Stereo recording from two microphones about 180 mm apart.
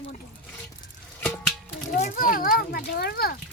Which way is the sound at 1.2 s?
Centre (ahead or behind).